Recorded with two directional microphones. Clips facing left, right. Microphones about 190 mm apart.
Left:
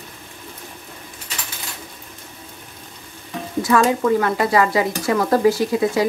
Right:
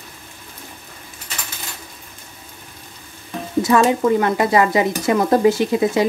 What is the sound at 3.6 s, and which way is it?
Speech, 20° right (ahead or behind).